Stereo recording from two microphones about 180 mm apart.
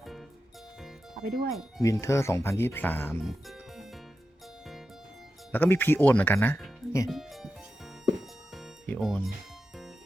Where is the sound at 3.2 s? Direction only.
Centre (ahead or behind).